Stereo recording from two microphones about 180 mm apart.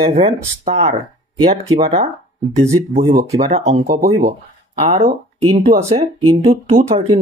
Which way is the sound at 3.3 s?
35° right (ahead or behind).